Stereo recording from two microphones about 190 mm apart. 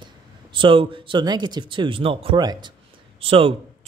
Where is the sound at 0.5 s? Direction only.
25° right (ahead or behind).